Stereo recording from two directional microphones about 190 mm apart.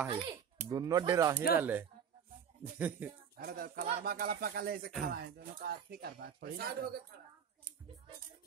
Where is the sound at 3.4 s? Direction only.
50° right (ahead or behind).